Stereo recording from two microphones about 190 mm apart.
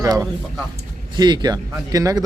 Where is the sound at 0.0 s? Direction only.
20° right (ahead or behind).